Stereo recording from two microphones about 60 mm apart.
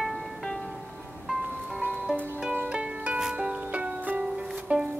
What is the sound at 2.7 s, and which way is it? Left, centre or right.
Music, centre.